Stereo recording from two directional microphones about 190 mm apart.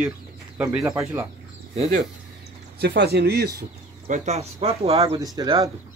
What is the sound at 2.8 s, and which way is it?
Speech, 55° right (ahead or behind).